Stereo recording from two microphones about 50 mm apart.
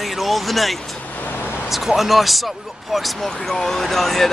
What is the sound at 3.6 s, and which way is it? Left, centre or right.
Speech, centre.